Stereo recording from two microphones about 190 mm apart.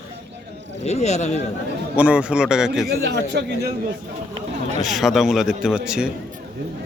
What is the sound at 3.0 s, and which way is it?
Speech, 65° right (ahead or behind).